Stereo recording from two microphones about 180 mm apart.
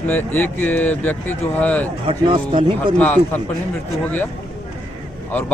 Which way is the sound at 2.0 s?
30° right (ahead or behind).